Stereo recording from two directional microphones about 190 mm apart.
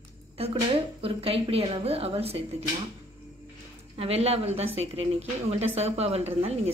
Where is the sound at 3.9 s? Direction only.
30° right (ahead or behind).